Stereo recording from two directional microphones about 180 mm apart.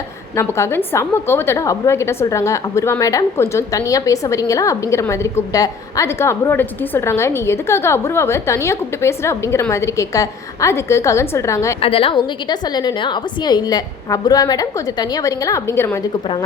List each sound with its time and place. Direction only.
0.3 s a woman's voice: 15° left (ahead or behind)
11.8 s a woman's voice: 30° left (ahead or behind); by 16.0 s 15° left (ahead or behind)